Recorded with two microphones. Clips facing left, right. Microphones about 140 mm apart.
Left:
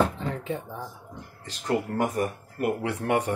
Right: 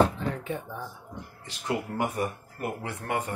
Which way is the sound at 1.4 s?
40° left (ahead or behind).